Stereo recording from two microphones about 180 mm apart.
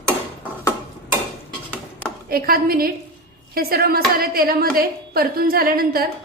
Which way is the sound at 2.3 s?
55° right (ahead or behind).